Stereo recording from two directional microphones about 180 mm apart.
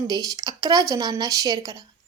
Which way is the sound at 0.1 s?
20° right (ahead or behind).